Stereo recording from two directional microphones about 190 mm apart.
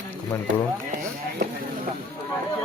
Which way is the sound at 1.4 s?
60° right (ahead or behind).